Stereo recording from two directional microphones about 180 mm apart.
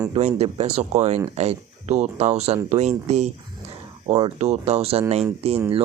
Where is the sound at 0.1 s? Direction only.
35° right (ahead or behind).